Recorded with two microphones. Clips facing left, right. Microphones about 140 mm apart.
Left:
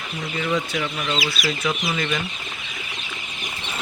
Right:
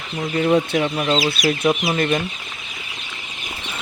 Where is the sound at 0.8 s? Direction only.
35° right (ahead or behind).